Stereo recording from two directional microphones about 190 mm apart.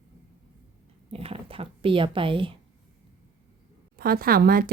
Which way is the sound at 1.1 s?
30° right (ahead or behind).